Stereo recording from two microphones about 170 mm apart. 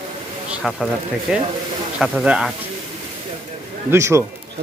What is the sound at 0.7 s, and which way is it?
Speech, 5° right (ahead or behind).